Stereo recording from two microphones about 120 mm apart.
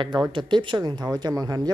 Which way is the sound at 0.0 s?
40° right (ahead or behind).